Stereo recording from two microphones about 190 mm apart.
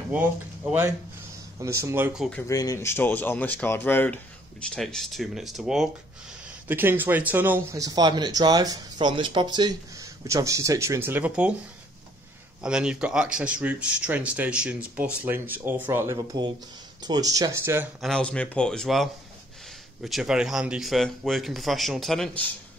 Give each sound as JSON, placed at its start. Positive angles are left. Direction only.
{"t": 0.1, "sound": "speech", "side_deg": -10}
{"t": 2.4, "sound": "speech", "side_deg": 20}
{"t": 12.6, "sound": "speech", "side_deg": -5}
{"t": 18.0, "sound": "speech", "side_deg": 5}